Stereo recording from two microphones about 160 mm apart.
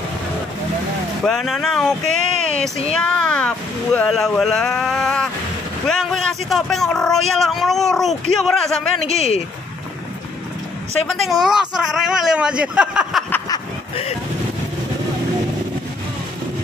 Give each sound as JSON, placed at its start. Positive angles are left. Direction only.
{"t": 1.2, "sound": "speech", "side_deg": 0}
{"t": 9.0, "sound": "speech", "side_deg": 40}
{"t": 11.1, "sound": "speech", "side_deg": 0}